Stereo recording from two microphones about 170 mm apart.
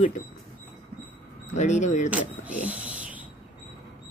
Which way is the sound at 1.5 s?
45° left (ahead or behind).